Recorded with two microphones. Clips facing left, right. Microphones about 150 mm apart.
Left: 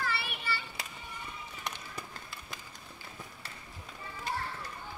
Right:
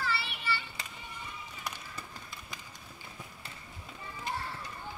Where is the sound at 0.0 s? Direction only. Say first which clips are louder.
Right 1 dB; 50° left (ahead or behind).